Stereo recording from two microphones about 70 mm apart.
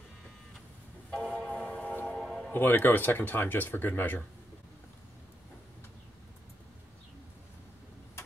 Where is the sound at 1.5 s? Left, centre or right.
Centre.